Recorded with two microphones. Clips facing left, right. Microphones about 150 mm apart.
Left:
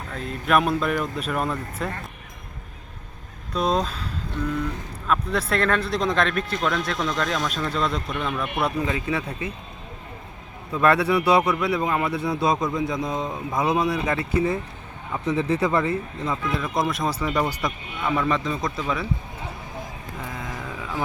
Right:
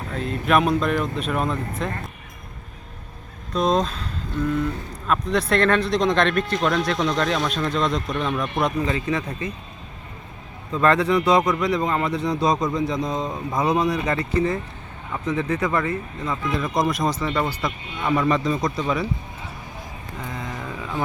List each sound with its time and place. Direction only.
0.4 s a man's voice: centre (ahead or behind)
3.5 s a man's voice: 10° left (ahead or behind)
10.7 s a man's voice: 10° left (ahead or behind)
15.4 s speech: 30° left (ahead or behind)
16.2 s speech: 5° left (ahead or behind)
18.0 s a man's voice: 10° right (ahead or behind)
20.3 s a sound: centre (ahead or behind)